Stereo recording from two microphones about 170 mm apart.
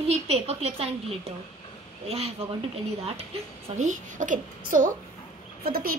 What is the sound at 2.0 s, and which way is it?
Speech, 35° right (ahead or behind).